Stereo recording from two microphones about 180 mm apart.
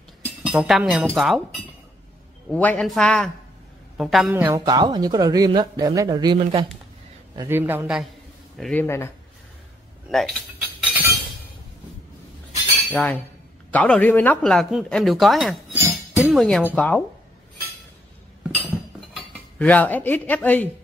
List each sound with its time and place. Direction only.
0.2 s a sound: 5° right (ahead or behind)
1.1 s speech: centre (ahead or behind)
2.5 s speech: 5° left (ahead or behind); by 4.6 s 10° right (ahead or behind)
4.6 s speech: 25° right (ahead or behind)
7.4 s a man's voice: 10° right (ahead or behind)
8.8 s speech: 15° left (ahead or behind)
10.0 s speech: centre (ahead or behind)
10.9 s chink: 10° right (ahead or behind)
12.9 s speech: 10° left (ahead or behind)
19.6 s speech: 10° left (ahead or behind)